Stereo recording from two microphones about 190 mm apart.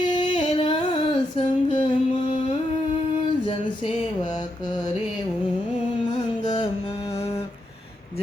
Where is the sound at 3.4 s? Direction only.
25° left (ahead or behind).